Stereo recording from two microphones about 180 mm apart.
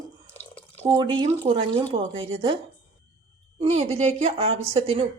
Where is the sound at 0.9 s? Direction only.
25° right (ahead or behind).